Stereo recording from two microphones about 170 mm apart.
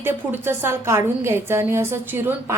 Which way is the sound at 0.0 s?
10° right (ahead or behind).